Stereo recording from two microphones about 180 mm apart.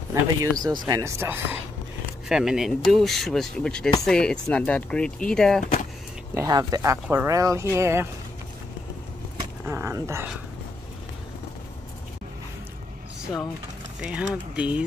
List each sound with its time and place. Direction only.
0.1 s speech: 20° right (ahead or behind); by 5.6 s 5° left (ahead or behind)
6.3 s speech: 20° right (ahead or behind)
9.7 s a sound: 15° right (ahead or behind)
14.0 s speech: 5° right (ahead or behind)